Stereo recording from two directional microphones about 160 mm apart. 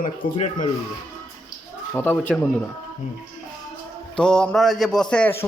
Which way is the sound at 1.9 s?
10° left (ahead or behind).